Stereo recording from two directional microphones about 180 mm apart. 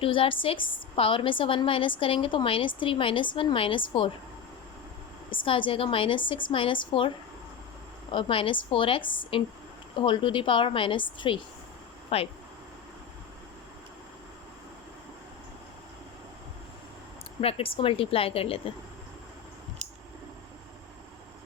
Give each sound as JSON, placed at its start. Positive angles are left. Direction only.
{"t": 0.0, "sound": "a woman's voice", "side_deg": 30}
{"t": 5.3, "sound": "a woman's voice", "side_deg": 30}
{"t": 8.1, "sound": "a woman's voice", "side_deg": 30}
{"t": 17.4, "sound": "a woman's voice", "side_deg": 30}